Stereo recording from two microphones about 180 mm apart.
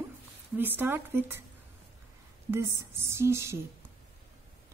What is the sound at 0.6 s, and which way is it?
Speech, 10° right (ahead or behind).